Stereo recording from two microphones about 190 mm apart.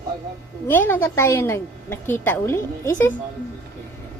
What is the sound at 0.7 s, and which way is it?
A woman's voice, 10° left (ahead or behind).